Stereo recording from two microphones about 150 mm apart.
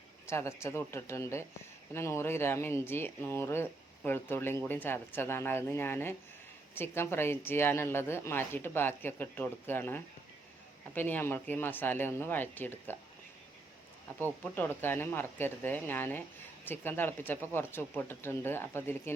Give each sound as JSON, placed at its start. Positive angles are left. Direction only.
{"t": 0.3, "sound": "speech", "side_deg": 20}
{"t": 14.1, "sound": "speech", "side_deg": 10}